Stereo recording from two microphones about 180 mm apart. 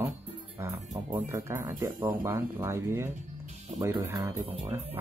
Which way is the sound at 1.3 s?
15° right (ahead or behind).